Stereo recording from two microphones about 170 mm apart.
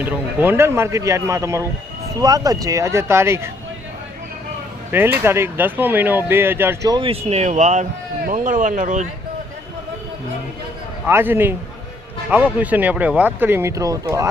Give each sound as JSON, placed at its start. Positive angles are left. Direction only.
{"t": 0.0, "sound": "speech", "side_deg": -10}
{"t": 4.9, "sound": "speech", "side_deg": -10}
{"t": 6.9, "sound": "speech", "side_deg": -35}
{"t": 11.0, "sound": "speech", "side_deg": -10}